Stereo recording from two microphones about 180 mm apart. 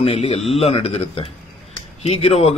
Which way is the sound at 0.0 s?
35° left (ahead or behind).